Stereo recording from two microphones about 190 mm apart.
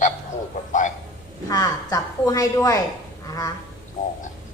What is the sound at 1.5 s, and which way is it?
A woman's voice, 20° left (ahead or behind).